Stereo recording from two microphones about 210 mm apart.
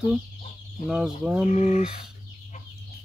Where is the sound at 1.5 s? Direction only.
30° left (ahead or behind).